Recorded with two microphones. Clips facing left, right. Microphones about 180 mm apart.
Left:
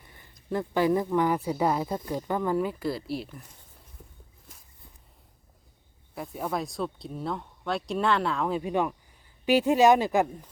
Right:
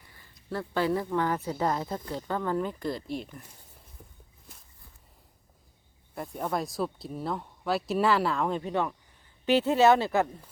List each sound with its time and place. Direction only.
0.0 s a sound: 20° left (ahead or behind)
0.6 s speech: 15° left (ahead or behind)
6.1 s speech: centre (ahead or behind)